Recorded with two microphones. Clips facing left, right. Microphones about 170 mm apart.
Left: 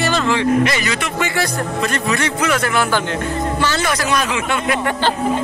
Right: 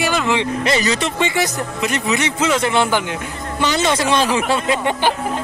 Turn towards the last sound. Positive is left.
turn(degrees=-15)  # may be behind; listen again after turning